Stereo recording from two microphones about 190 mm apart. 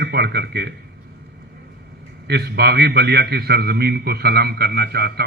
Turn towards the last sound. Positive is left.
turn(degrees=-55)  # may be behind; listen again after turning